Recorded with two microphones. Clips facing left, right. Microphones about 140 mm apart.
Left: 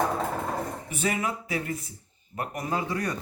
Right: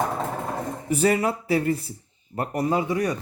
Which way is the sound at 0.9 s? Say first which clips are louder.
Right 10 dB; 35° right (ahead or behind).